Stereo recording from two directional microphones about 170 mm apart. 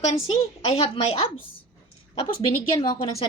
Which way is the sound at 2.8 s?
25° left (ahead or behind).